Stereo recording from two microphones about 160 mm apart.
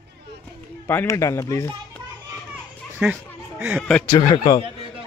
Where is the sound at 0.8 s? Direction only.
20° left (ahead or behind).